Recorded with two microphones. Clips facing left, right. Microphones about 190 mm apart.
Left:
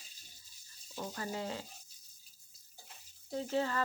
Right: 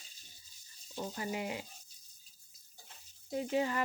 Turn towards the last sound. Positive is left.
turn(degrees=-15)  # may be behind; listen again after turning